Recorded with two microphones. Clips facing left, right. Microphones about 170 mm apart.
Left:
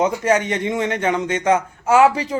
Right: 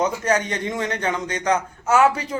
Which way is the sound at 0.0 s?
25° left (ahead or behind).